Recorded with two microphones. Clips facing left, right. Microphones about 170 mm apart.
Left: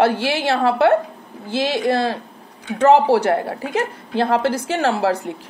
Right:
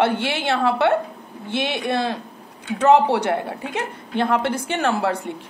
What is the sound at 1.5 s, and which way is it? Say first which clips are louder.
A woman's voice: left 4 dB; 30° left (ahead or behind).